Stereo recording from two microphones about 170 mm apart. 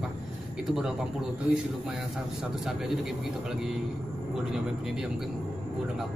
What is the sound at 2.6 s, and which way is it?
A man's voice, 5° right (ahead or behind).